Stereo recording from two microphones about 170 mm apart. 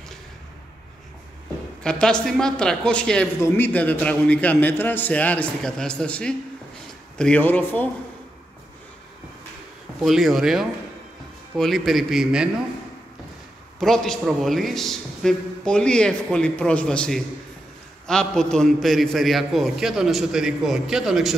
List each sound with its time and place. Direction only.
1.8 s a man's voice: 5° left (ahead or behind)
10.0 s a man's voice: centre (ahead or behind)
13.7 s a man's voice: centre (ahead or behind)